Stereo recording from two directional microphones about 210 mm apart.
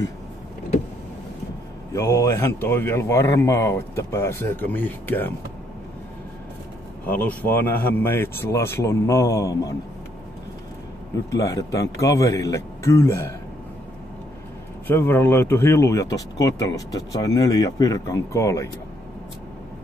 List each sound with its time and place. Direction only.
1.9 s speech: 15° left (ahead or behind)
7.1 s speech: 10° left (ahead or behind)
11.2 s speech: 15° left (ahead or behind)
14.9 s speech: 10° left (ahead or behind)